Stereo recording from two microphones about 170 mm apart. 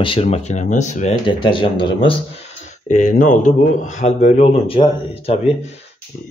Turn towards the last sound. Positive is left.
turn(degrees=35)  # may be behind; listen again after turning